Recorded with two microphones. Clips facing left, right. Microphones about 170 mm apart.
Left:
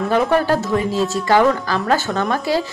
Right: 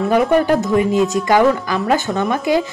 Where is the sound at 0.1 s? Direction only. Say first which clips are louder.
Right 2 dB; 15° right (ahead or behind).